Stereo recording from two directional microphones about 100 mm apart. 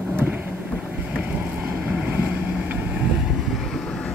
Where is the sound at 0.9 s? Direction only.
15° right (ahead or behind).